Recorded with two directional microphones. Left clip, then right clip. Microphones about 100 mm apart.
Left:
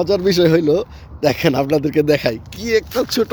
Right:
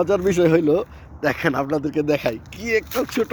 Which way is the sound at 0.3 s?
55° left (ahead or behind).